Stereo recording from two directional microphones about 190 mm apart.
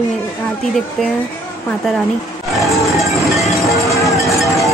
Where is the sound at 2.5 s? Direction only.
Centre (ahead or behind).